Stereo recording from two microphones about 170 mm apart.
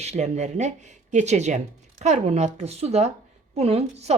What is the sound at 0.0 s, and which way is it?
Speech, 40° right (ahead or behind).